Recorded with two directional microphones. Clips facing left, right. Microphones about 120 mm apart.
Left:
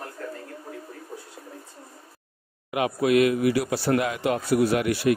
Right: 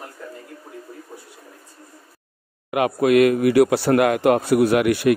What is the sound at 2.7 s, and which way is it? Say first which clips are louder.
Speech: right 5 dB; 60° right (ahead or behind).